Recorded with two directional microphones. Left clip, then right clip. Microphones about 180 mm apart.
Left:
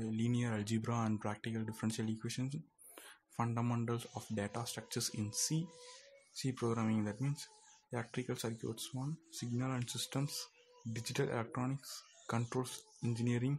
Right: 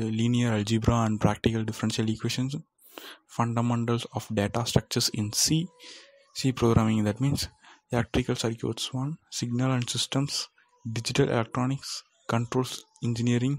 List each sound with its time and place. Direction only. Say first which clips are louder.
0.0 s speech: right 11 dB; 40° right (ahead or behind)